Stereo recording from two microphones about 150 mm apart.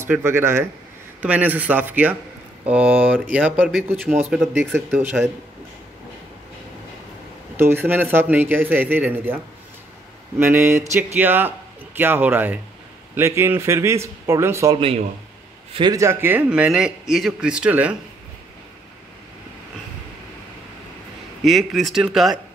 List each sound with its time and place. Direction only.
0.0 s a man's voice: 15° right (ahead or behind)
4.4 s speech: 5° left (ahead or behind)
4.9 s a man's voice: 10° right (ahead or behind)
7.5 s a man's voice: 15° right (ahead or behind)
10.4 s a man's voice: 15° right (ahead or behind)
21.4 s speech: centre (ahead or behind)